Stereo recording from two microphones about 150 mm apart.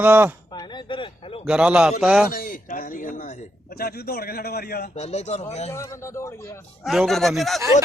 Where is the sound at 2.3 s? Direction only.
65° left (ahead or behind).